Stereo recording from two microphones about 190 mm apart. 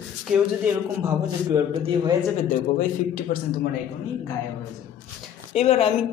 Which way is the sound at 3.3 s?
50° left (ahead or behind).